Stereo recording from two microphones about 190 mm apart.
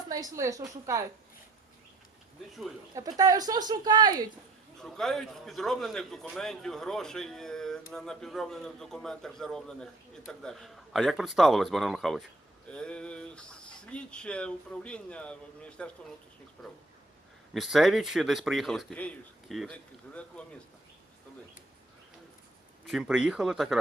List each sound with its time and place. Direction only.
0.1 s a woman's voice: 20° right (ahead or behind)
2.9 s speech: 20° right (ahead or behind)
4.8 s a man's voice: centre (ahead or behind)
17.5 s a man's voice: centre (ahead or behind)
22.9 s a man's voice: 5° right (ahead or behind)